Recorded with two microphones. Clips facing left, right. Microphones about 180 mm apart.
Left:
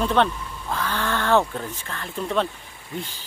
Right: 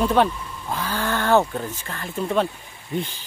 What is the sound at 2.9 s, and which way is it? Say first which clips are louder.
Speech: right 6 dB; 20° right (ahead or behind).